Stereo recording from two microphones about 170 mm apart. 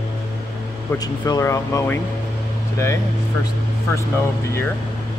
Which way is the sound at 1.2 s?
20° left (ahead or behind).